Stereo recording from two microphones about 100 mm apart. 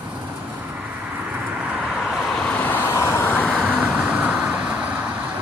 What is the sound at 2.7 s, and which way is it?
Vehicle, 20° left (ahead or behind).